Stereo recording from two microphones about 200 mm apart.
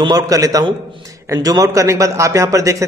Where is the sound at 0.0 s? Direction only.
20° right (ahead or behind).